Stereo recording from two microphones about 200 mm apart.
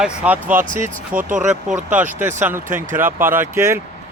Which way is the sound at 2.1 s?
10° right (ahead or behind).